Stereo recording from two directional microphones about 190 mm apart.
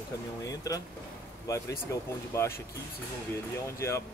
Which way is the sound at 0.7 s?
20° left (ahead or behind).